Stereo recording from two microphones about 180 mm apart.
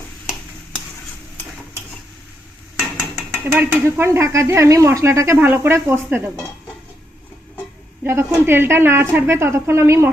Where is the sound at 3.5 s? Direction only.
15° right (ahead or behind).